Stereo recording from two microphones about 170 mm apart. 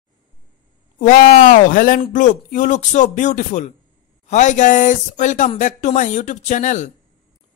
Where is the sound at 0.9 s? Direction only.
50° left (ahead or behind).